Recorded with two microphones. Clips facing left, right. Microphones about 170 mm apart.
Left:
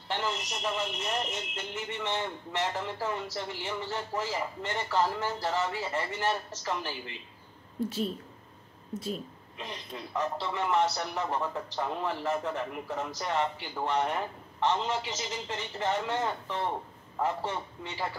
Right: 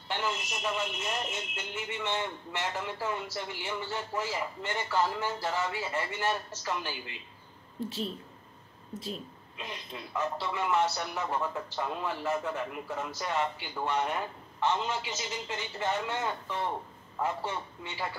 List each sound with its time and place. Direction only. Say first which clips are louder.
0.1 s a man's voice: left 1 dB; 30° left (ahead or behind)
9.9 s a man's voice: left 1 dB; 30° left (ahead or behind)